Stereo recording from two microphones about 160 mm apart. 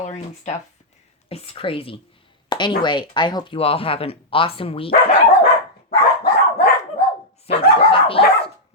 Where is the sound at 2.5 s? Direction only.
30° left (ahead or behind).